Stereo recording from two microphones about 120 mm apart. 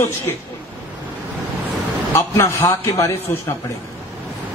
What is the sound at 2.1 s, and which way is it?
A man's voice, 20° left (ahead or behind).